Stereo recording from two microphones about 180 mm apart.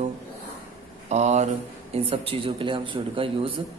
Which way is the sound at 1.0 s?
40° right (ahead or behind).